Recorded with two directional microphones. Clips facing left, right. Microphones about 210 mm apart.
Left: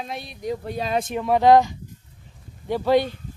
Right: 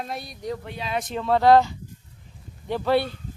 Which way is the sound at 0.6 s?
40° left (ahead or behind).